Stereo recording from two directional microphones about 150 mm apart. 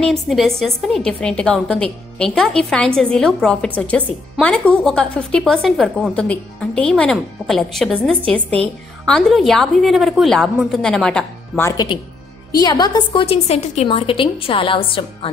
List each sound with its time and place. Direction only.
0.0 s a woman's voice: centre (ahead or behind)
11.6 s a woman's voice: 25° left (ahead or behind)